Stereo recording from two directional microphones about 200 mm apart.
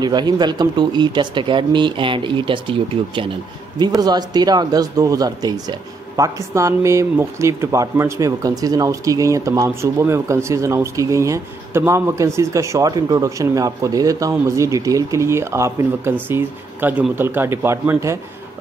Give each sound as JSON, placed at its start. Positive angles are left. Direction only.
{"t": 0.0, "sound": "speech", "side_deg": -20}
{"t": 3.7, "sound": "speech", "side_deg": -20}